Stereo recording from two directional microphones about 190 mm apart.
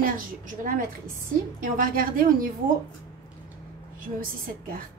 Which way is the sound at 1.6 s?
45° right (ahead or behind).